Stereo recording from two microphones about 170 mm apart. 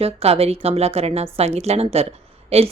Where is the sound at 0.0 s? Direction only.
35° right (ahead or behind).